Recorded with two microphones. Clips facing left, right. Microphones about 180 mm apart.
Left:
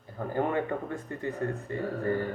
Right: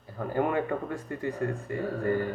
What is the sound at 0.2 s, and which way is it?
A man's voice, 25° left (ahead or behind).